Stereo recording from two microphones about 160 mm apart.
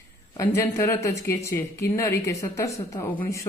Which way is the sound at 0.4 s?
15° left (ahead or behind).